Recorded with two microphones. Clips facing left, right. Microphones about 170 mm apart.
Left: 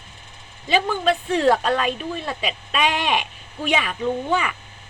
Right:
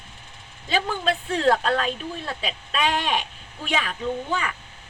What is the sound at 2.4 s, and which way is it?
Speech, 75° left (ahead or behind).